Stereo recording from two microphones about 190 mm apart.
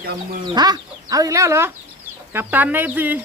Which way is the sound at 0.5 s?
20° right (ahead or behind).